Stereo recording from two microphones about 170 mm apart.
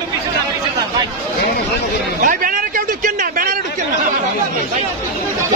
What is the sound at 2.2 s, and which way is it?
Speech, 55° right (ahead or behind).